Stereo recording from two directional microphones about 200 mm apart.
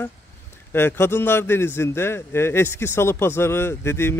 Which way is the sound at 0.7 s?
10° left (ahead or behind).